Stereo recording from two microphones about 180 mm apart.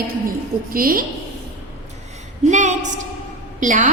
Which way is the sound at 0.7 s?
55° right (ahead or behind).